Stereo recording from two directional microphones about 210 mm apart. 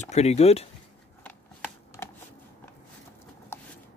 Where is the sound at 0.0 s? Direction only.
30° left (ahead or behind).